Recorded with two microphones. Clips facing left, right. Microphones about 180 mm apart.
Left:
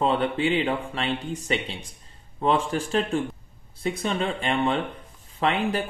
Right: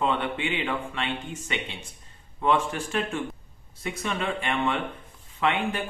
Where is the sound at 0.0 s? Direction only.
35° left (ahead or behind).